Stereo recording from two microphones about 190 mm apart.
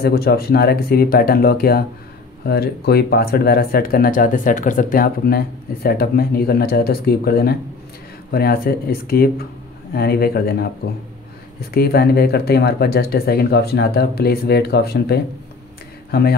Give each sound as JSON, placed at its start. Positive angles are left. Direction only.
{"t": 0.0, "sound": "speech", "side_deg": 55}
{"t": 11.7, "sound": "speech", "side_deg": 55}